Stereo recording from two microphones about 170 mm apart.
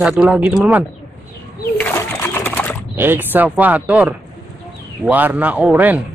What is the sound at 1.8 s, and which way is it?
Pigeon, 15° left (ahead or behind).